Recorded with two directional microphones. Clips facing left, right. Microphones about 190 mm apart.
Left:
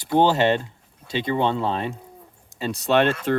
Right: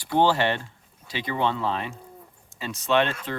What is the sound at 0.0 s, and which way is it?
Speech, 20° left (ahead or behind).